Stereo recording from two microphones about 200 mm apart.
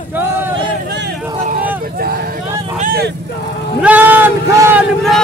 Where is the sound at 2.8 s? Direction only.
45° right (ahead or behind).